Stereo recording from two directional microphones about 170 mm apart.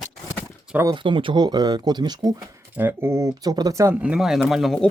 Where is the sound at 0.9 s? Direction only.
30° right (ahead or behind).